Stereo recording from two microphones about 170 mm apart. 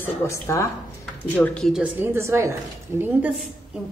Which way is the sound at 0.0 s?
15° left (ahead or behind).